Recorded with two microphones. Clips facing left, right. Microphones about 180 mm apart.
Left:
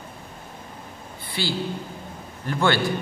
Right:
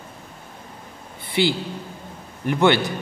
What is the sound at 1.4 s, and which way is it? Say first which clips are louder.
A man's voice: right 5 dB; 20° right (ahead or behind).